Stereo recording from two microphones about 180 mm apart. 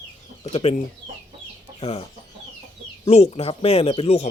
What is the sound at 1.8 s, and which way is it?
Chicken, 30° left (ahead or behind).